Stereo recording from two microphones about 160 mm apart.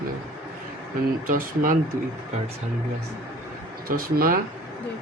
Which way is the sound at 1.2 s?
60° right (ahead or behind).